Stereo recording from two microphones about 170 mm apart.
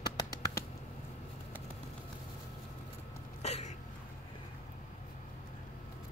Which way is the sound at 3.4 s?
40° left (ahead or behind).